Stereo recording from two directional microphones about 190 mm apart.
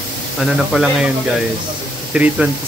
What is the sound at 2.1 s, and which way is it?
Speech, 5° right (ahead or behind).